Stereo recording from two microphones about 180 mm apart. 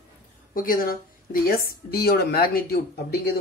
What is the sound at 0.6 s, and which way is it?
A woman's voice, 50° left (ahead or behind).